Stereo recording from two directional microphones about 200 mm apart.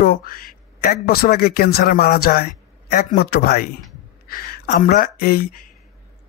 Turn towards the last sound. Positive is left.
turn(degrees=50)  # may be behind; listen again after turning